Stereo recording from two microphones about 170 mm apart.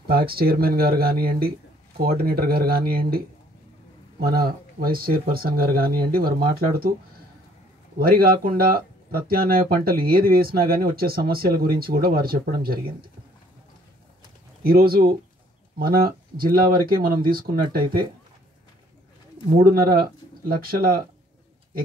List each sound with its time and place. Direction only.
0.1 s speech: 60° right (ahead or behind)
8.0 s speech: 60° right (ahead or behind)
14.6 s speech: 65° right (ahead or behind)
19.6 s speech: 60° right (ahead or behind)